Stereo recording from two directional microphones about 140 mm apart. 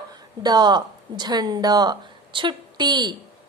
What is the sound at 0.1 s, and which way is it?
A woman's voice, 30° right (ahead or behind).